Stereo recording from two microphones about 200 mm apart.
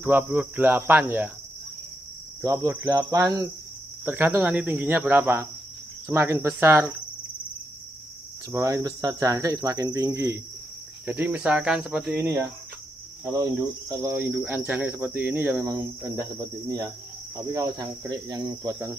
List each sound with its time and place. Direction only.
0.0 s speech: 10° right (ahead or behind)
2.4 s speech: 15° right (ahead or behind)
8.5 s speech: 15° right (ahead or behind)
17.5 s cricket: 15° right (ahead or behind)